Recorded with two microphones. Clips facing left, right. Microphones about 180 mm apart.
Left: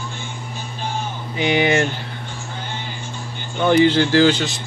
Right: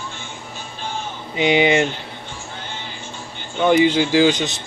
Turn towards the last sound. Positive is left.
turn(degrees=-20)  # may be behind; listen again after turning